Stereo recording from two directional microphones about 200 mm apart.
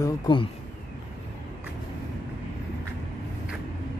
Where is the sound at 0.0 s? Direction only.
25° left (ahead or behind).